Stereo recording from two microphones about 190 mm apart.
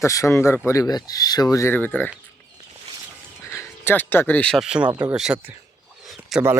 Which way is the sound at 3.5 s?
15° left (ahead or behind).